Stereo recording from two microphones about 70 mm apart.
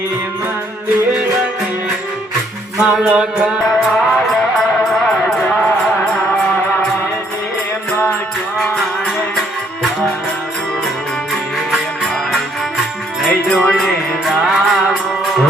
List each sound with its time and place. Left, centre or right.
2.8 s music: centre
3.7 s music: centre
13.6 s music: centre